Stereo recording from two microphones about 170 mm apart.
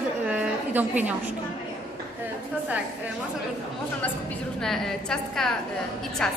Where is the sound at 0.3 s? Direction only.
10° right (ahead or behind).